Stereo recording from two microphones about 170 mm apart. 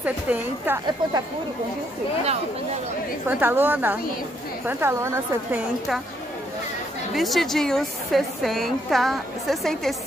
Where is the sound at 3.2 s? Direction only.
10° right (ahead or behind).